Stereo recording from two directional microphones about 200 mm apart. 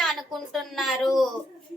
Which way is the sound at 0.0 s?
Centre (ahead or behind).